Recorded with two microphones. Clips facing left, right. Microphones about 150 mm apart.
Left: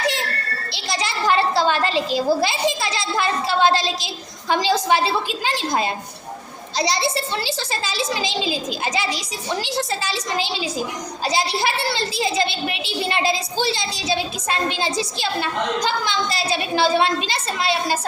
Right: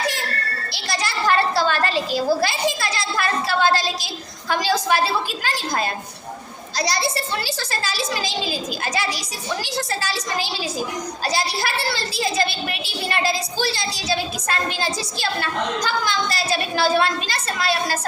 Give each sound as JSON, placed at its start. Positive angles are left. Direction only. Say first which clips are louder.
{"t": 0.7, "sound": "a woman's voice", "louder": "left 1 dB", "side_deg": 20}